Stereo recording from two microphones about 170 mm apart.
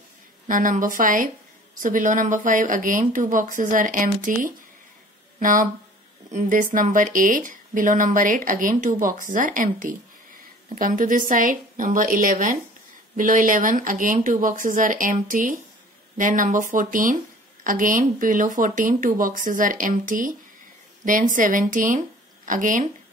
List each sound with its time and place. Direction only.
0.5 s a woman's voice: 50° right (ahead or behind)